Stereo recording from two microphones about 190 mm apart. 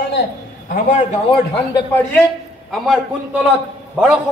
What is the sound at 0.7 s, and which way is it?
Speech, 40° left (ahead or behind).